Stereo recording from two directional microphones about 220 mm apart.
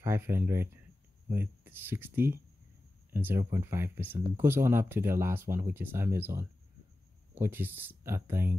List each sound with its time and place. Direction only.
0.0 s speech: 10° right (ahead or behind)